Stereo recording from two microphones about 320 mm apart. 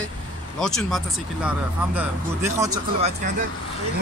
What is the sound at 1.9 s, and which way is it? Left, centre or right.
Speech, centre.